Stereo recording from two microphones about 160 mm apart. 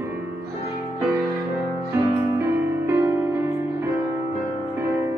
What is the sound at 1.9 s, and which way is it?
Music, 15° right (ahead or behind).